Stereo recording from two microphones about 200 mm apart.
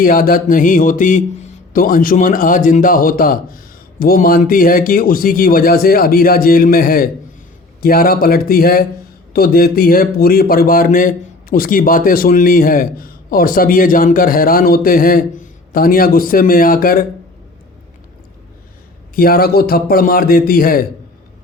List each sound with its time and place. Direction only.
0.0 s a man's voice: 45° left (ahead or behind)
19.1 s a man's voice: 50° left (ahead or behind)